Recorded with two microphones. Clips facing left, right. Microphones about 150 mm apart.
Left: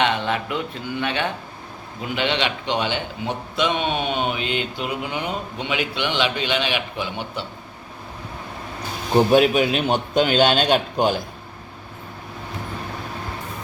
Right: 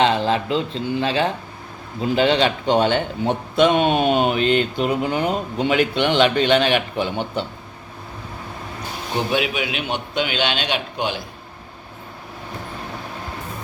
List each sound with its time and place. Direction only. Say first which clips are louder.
0.0 s a man's voice: right 4 dB; 30° right (ahead or behind)
9.3 s a man's voice: left 6 dB; 40° left (ahead or behind)